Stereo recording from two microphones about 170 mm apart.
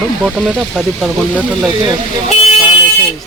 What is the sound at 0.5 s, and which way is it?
Speech, 5° right (ahead or behind).